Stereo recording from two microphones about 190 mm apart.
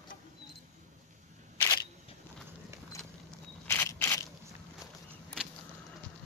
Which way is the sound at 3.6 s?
10° left (ahead or behind).